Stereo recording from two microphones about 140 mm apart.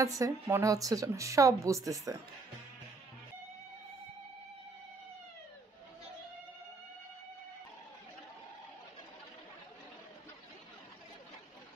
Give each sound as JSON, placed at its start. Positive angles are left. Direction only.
{"t": 0.0, "sound": "a woman's voice", "side_deg": -25}